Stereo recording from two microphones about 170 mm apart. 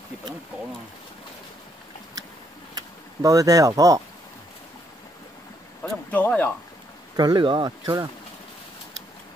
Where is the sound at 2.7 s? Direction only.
20° right (ahead or behind).